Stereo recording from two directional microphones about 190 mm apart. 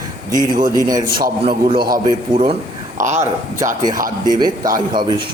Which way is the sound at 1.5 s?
25° right (ahead or behind).